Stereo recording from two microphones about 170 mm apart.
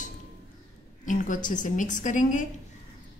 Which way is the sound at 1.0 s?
50° left (ahead or behind).